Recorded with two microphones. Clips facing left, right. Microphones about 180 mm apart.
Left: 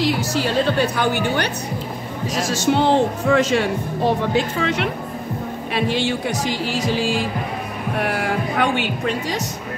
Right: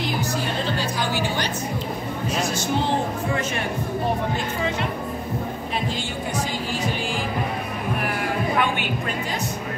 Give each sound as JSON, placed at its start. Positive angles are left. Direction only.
{"t": 0.0, "sound": "a woman's voice", "side_deg": 90}
{"t": 2.3, "sound": "speech", "side_deg": 90}
{"t": 5.8, "sound": "speech", "side_deg": 70}